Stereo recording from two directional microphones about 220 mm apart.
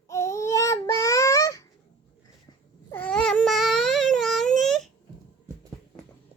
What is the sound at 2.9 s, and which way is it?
Baby cry, 5° left (ahead or behind).